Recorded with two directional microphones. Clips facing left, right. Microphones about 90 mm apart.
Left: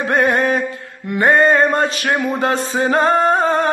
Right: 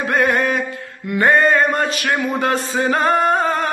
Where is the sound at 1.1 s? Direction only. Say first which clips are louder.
Left 1 dB; 25° left (ahead or behind).